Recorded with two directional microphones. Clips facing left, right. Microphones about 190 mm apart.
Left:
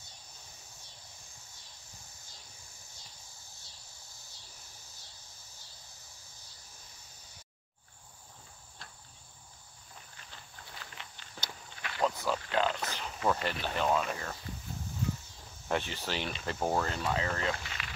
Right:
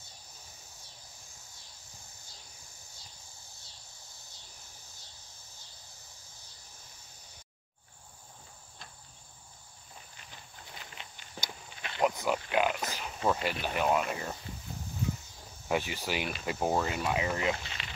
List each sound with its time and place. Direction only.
10.1 s walk: 20° right (ahead or behind)
13.3 s speech: 10° right (ahead or behind)
15.7 s speech: 10° right (ahead or behind)